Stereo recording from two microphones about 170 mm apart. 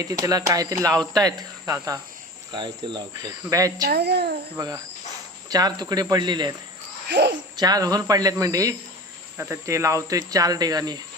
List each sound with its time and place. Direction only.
0.0 s speech: 20° right (ahead or behind)
3.8 s a child's voice: 75° right (ahead or behind)
4.5 s speech: 20° right (ahead or behind)
7.1 s speech: 90° right
7.6 s speech: 20° right (ahead or behind)